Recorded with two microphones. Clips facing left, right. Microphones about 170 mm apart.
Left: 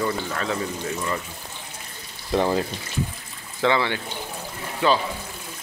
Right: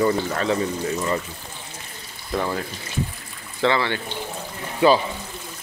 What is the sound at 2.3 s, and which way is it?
Speech, 25° left (ahead or behind).